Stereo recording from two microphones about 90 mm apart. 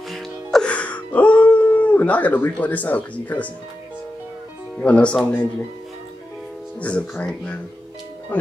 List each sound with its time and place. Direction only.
0.1 s music: 5° left (ahead or behind)
0.7 s a sound: 15° left (ahead or behind)
4.7 s speech: 10° left (ahead or behind)
6.8 s speech: 15° left (ahead or behind)